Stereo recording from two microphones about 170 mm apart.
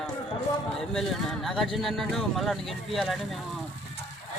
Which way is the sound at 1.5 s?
Centre (ahead or behind).